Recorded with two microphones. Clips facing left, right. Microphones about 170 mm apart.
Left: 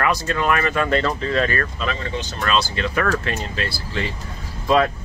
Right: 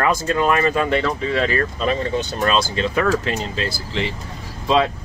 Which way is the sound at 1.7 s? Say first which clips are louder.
Right 5 dB; 40° right (ahead or behind).